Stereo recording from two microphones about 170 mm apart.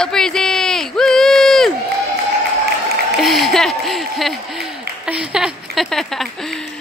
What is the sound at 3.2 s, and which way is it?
Speech, centre (ahead or behind).